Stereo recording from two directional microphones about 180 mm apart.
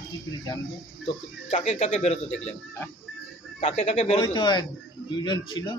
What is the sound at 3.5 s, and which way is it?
Speech, 40° left (ahead or behind).